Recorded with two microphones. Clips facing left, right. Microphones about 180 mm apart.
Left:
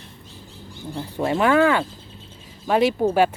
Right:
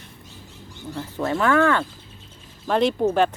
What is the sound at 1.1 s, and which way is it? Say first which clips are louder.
Speech: left 2 dB; 15° left (ahead or behind).